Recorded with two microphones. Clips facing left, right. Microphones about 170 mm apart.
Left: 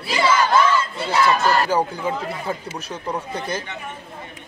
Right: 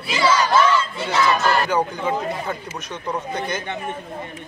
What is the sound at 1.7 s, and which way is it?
Speech, 30° left (ahead or behind).